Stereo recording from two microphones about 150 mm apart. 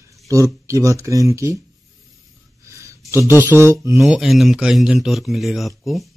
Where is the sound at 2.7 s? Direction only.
20° right (ahead or behind).